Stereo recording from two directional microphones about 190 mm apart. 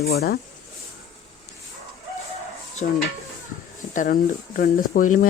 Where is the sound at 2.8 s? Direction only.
45° left (ahead or behind).